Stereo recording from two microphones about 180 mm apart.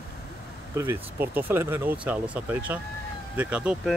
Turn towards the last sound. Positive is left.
turn(degrees=-5)  # may be behind; listen again after turning